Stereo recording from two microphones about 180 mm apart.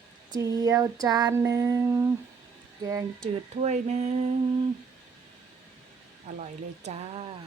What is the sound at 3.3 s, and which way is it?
Speech, 40° right (ahead or behind).